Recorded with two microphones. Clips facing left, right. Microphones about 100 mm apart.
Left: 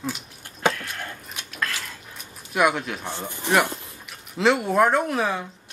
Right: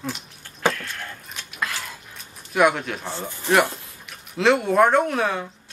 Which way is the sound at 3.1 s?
15° left (ahead or behind).